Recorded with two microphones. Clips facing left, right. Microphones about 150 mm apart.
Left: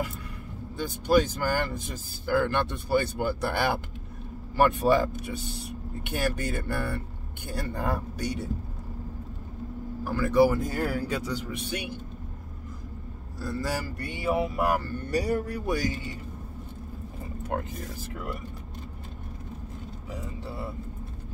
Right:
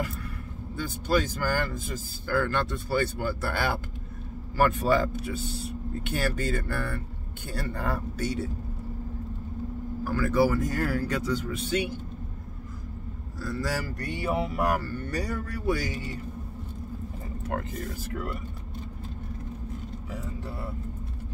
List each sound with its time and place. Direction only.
1.0 s speech: 15° left (ahead or behind)
10.0 s speech: 15° left (ahead or behind)
13.4 s speech: 10° left (ahead or behind)